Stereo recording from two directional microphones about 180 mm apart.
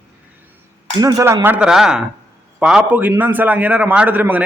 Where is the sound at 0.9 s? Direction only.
20° right (ahead or behind).